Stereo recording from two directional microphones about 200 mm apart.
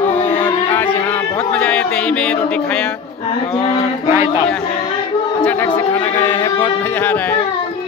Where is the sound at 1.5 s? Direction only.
5° left (ahead or behind).